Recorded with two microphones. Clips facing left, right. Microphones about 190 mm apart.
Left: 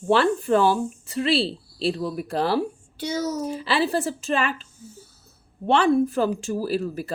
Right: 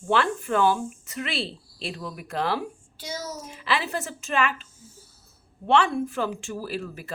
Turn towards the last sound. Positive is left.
turn(degrees=35)  # may be behind; listen again after turning